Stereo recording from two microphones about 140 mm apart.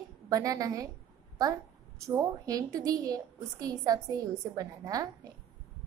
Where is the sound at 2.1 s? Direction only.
25° right (ahead or behind).